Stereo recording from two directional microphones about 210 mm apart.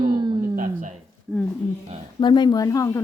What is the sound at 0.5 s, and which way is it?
Speech, 40° right (ahead or behind).